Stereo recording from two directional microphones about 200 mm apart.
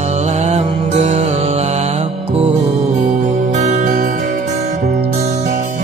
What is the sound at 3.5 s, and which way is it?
Music, 35° right (ahead or behind).